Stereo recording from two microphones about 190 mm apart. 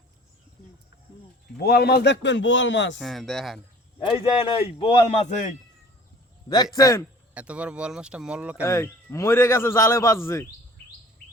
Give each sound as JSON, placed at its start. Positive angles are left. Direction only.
{"t": 1.5, "sound": "a man's voice", "side_deg": 55}
{"t": 3.0, "sound": "speech", "side_deg": 0}
{"t": 4.0, "sound": "a man's voice", "side_deg": 25}
{"t": 5.2, "sound": "a man's voice", "side_deg": 40}
{"t": 6.7, "sound": "a man's voice", "side_deg": 15}
{"t": 7.3, "sound": "speech", "side_deg": -5}
{"t": 8.6, "sound": "a man's voice", "side_deg": 15}